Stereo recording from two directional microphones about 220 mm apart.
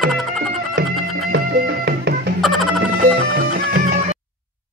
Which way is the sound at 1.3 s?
45° right (ahead or behind).